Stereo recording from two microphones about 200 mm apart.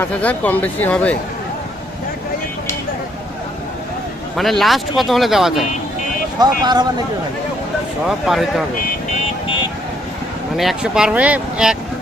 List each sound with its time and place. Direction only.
0.0 s speech: 10° left (ahead or behind)
4.4 s speech: centre (ahead or behind)
6.4 s speech: 20° right (ahead or behind)
8.0 s speech: centre (ahead or behind)
10.6 s speech: centre (ahead or behind)